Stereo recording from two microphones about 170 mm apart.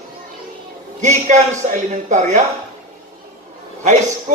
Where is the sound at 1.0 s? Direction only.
45° right (ahead or behind).